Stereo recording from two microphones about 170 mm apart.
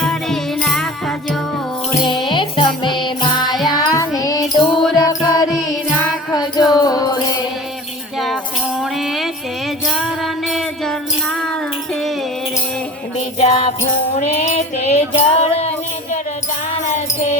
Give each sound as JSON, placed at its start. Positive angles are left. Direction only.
{"t": 0.0, "sound": "music", "side_deg": 0}
{"t": 2.2, "sound": "music", "side_deg": 25}
{"t": 3.5, "sound": "music", "side_deg": 0}
{"t": 3.8, "sound": "child singing", "side_deg": 20}
{"t": 4.4, "sound": "music", "side_deg": 0}
{"t": 5.0, "sound": "music", "side_deg": 25}
{"t": 8.8, "sound": "music", "side_deg": 0}
{"t": 13.1, "sound": "jingle bell", "side_deg": 35}
{"t": 14.2, "sound": "music", "side_deg": 40}